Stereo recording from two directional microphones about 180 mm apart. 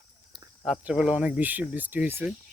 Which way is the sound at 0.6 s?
5° right (ahead or behind).